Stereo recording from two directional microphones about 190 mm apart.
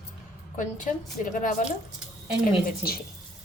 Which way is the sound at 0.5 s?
45° left (ahead or behind).